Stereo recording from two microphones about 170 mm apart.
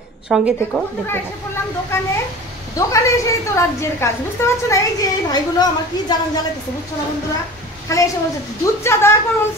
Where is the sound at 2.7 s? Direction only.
20° left (ahead or behind).